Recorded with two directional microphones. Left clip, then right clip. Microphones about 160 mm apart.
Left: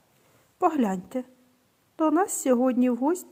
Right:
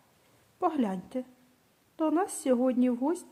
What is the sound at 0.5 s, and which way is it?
A woman's voice, 30° left (ahead or behind).